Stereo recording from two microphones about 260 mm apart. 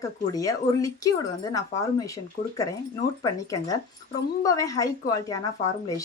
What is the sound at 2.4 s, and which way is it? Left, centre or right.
Speech, left.